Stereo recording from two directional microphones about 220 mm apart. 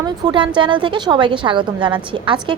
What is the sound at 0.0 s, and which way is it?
A woman's voice, 20° right (ahead or behind).